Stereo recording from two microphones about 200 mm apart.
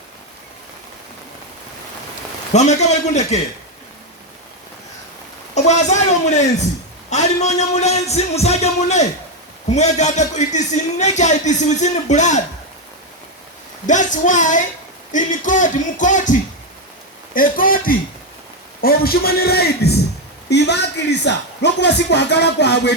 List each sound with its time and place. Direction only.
2.5 s a man's voice: 35° left (ahead or behind)
5.5 s a man's voice: 35° left (ahead or behind)
13.8 s a man's voice: 40° left (ahead or behind); by 22.9 s 60° left (ahead or behind)